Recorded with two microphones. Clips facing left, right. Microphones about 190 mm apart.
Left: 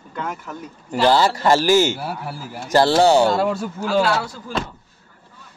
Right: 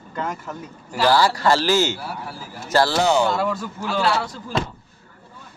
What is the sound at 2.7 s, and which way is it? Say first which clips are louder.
Speech: left 4 dB; 25° left (ahead or behind).